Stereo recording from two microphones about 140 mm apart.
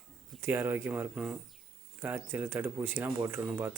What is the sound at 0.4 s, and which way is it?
Speech, 15° right (ahead or behind).